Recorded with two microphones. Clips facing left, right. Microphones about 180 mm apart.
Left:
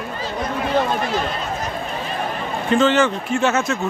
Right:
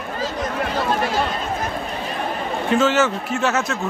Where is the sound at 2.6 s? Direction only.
5° right (ahead or behind).